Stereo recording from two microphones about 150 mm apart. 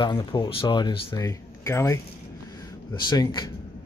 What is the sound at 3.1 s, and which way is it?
Speech, 30° left (ahead or behind).